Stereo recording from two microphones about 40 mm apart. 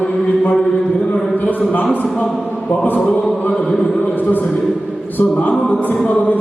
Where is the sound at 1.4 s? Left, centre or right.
Left.